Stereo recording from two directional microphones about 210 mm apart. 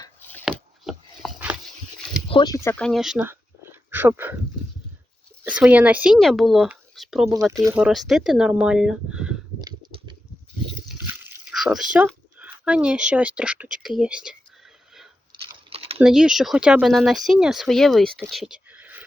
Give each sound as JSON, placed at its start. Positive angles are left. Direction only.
{"t": 0.0, "sound": "a sound", "side_deg": 10}
{"t": 0.4, "sound": "a sound", "side_deg": 0}
{"t": 2.3, "sound": "speech", "side_deg": 20}
{"t": 2.6, "sound": "speech", "side_deg": 5}
{"t": 5.4, "sound": "speech", "side_deg": -5}
{"t": 7.5, "sound": "speech", "side_deg": -10}
{"t": 9.6, "sound": "a sound", "side_deg": -20}
{"t": 15.4, "sound": "typing", "side_deg": -30}
{"t": 16.0, "sound": "speech", "side_deg": -5}